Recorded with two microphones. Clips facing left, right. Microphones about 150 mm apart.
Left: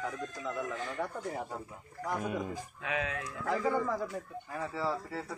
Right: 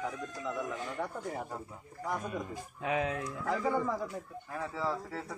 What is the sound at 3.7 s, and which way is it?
Speech, 5° right (ahead or behind).